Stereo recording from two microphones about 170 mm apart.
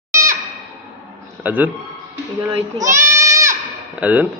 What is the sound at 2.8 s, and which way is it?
Goat, 15° right (ahead or behind).